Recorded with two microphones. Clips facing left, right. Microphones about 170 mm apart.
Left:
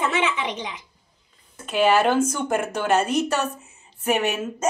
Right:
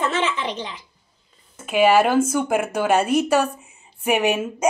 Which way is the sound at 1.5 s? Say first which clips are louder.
Right 3 dB; 10° right (ahead or behind).